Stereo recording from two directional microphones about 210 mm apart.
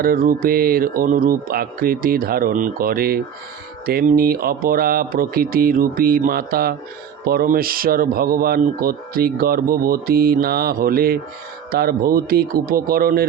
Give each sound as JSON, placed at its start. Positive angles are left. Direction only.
{"t": 0.0, "sound": "speech", "side_deg": -45}